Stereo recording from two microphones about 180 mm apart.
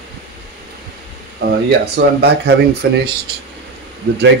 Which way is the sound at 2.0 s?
90° right.